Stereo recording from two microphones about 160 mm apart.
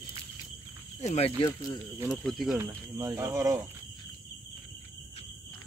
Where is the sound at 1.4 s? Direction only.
25° left (ahead or behind).